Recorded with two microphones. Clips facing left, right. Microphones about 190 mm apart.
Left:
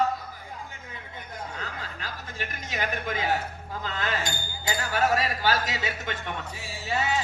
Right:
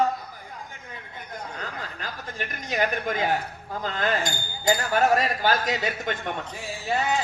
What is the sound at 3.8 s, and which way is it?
Speech, 45° right (ahead or behind).